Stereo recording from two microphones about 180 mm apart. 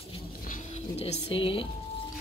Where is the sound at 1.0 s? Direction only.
30° left (ahead or behind).